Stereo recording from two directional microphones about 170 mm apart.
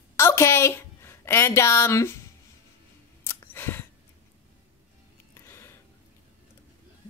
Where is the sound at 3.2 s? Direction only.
15° left (ahead or behind).